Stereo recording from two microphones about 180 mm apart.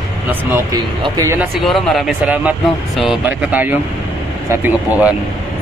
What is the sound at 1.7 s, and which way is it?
Speech, centre (ahead or behind).